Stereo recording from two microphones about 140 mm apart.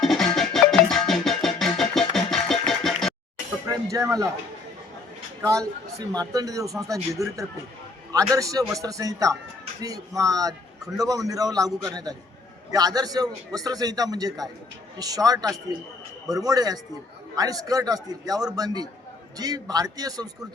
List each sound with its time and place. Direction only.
0.0 s music: 5° left (ahead or behind)
3.7 s cutlery: 25° right (ahead or behind)
5.4 s a man's voice: 20° right (ahead or behind)